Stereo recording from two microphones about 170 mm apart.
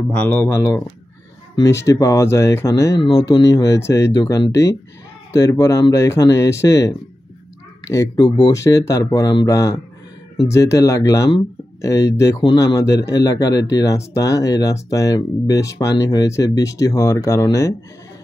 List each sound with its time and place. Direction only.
0.1 s speech: 10° left (ahead or behind)